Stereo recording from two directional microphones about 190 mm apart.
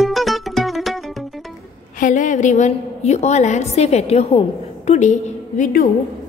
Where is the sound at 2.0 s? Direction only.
40° left (ahead or behind).